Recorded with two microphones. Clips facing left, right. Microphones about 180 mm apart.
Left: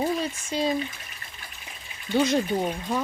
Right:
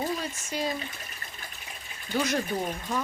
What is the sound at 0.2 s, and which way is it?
Speech, 25° left (ahead or behind).